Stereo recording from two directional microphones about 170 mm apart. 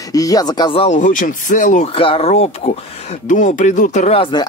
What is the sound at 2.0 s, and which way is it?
Speech, 35° left (ahead or behind).